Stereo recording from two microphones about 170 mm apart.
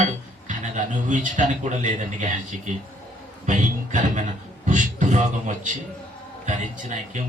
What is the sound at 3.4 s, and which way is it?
Speech, 45° right (ahead or behind).